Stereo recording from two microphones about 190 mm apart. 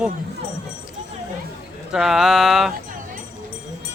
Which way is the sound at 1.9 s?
Centre (ahead or behind).